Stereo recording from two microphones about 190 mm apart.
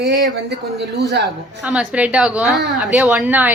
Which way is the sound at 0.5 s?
60° right (ahead or behind).